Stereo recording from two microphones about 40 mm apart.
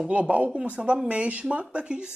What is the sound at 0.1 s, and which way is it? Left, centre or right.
Speech, right.